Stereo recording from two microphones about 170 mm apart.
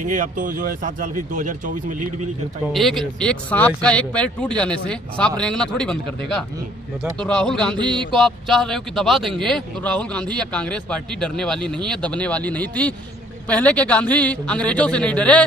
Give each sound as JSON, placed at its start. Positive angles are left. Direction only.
{"t": 0.0, "sound": "speech", "side_deg": -50}
{"t": 2.7, "sound": "speech", "side_deg": 0}